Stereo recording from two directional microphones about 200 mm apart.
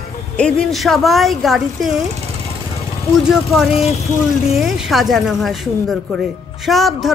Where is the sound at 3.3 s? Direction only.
Centre (ahead or behind).